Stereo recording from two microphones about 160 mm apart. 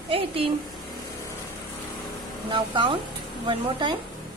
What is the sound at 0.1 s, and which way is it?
Speech, 35° right (ahead or behind).